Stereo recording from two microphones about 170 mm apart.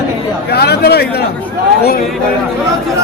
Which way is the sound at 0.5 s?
70° left (ahead or behind).